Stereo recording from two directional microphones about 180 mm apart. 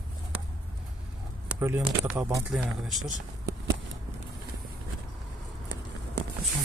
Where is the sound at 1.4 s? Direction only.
15° right (ahead or behind).